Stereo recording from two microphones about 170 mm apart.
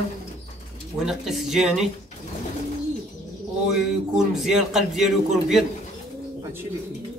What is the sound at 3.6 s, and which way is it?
A man's voice, centre (ahead or behind).